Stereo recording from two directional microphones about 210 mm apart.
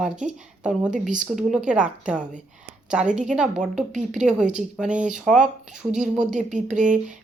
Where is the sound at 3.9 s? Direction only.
35° right (ahead or behind).